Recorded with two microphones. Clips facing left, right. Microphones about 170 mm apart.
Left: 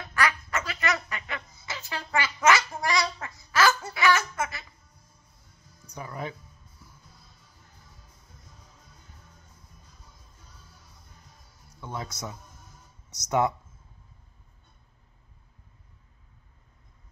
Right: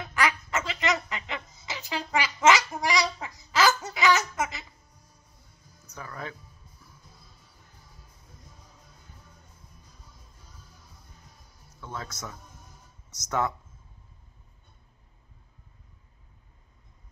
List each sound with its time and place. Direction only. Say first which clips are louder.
0.1 s quack: even; 20° right (ahead or behind)
5.9 s music: left 3 dB; 15° left (ahead or behind)
11.8 s music: left 2 dB; 15° left (ahead or behind)
13.3 s speech: left 4 dB; 15° left (ahead or behind)